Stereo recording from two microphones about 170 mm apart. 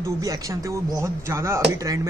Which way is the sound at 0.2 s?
20° right (ahead or behind).